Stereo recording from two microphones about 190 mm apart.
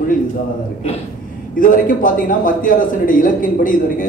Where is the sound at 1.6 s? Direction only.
45° left (ahead or behind).